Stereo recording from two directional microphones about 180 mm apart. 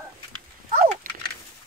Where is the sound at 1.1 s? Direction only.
50° right (ahead or behind).